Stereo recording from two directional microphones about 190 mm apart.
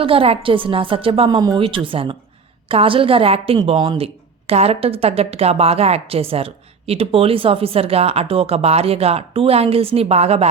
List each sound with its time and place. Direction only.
0.0 s a woman's voice: 30° right (ahead or behind)